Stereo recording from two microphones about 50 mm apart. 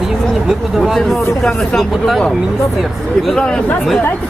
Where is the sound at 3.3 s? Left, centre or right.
Centre.